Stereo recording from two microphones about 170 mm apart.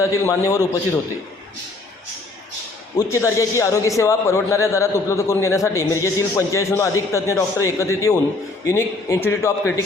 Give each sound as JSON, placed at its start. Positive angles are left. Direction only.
{"t": 0.0, "sound": "a man's voice", "side_deg": 20}
{"t": 3.1, "sound": "a man's voice", "side_deg": 15}